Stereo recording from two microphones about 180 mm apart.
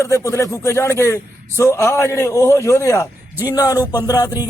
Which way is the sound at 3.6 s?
20° left (ahead or behind).